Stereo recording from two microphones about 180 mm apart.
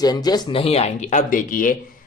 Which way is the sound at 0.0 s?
20° left (ahead or behind).